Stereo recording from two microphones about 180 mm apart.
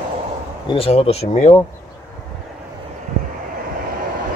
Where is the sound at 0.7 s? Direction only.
35° left (ahead or behind).